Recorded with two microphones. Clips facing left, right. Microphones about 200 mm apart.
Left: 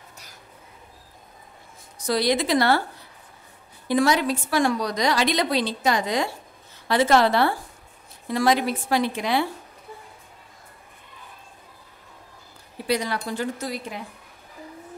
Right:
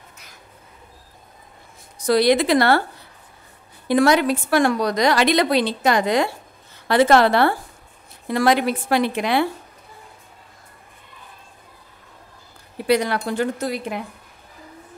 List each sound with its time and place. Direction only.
2.0 s a woman's voice: 65° right (ahead or behind)
3.8 s a woman's voice: 60° right (ahead or behind)
12.8 s a woman's voice: 65° right (ahead or behind)